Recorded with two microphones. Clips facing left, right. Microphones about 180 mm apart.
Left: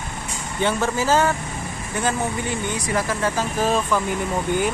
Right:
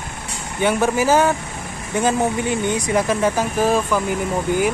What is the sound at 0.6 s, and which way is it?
Speech, 15° right (ahead or behind).